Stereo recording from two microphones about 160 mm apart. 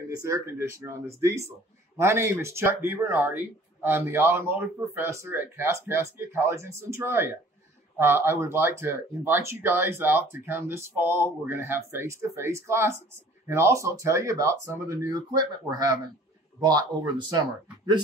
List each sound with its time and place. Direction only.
0.1 s speech: 20° right (ahead or behind)